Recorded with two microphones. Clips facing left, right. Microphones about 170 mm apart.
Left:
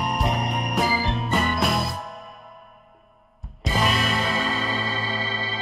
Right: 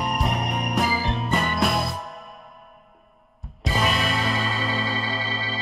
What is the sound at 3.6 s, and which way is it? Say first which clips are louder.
Music: even; centre (ahead or behind).